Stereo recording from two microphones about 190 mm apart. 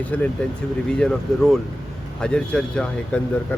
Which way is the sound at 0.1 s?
10° left (ahead or behind).